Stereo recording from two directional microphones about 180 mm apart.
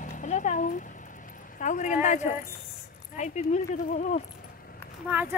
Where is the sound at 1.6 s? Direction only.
45° left (ahead or behind).